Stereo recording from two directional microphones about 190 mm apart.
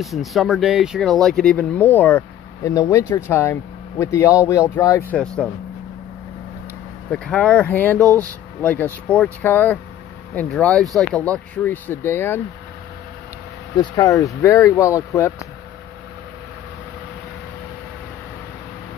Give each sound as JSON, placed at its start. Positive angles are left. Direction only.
{"t": 0.0, "sound": "speech", "side_deg": 0}
{"t": 5.2, "sound": "speech", "side_deg": 5}
{"t": 7.1, "sound": "speech", "side_deg": 5}
{"t": 8.0, "sound": "speech", "side_deg": -15}
{"t": 8.5, "sound": "speech", "side_deg": 10}
{"t": 13.7, "sound": "speech", "side_deg": 20}